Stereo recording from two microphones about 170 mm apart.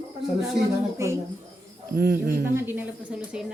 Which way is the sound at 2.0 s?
65° right (ahead or behind).